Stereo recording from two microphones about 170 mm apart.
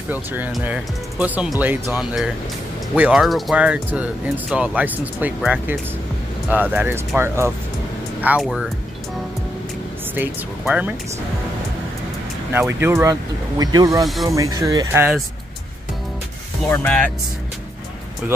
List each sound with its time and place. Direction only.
0.1 s speech: 10° right (ahead or behind)
8.2 s speech: 5° right (ahead or behind)
10.1 s speech: 10° right (ahead or behind)
12.8 s speech: 15° right (ahead or behind)
14.0 s speech: centre (ahead or behind)
14.3 s speech: 20° right (ahead or behind)
16.6 s speech: 5° left (ahead or behind)